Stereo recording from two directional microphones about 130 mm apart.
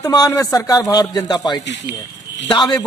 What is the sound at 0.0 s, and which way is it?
Speech, 25° left (ahead or behind).